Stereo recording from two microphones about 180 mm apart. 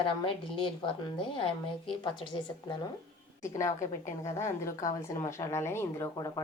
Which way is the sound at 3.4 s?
15° left (ahead or behind).